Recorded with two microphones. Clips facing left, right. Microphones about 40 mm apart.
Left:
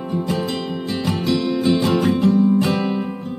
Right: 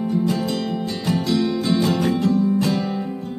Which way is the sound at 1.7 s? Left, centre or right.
Left.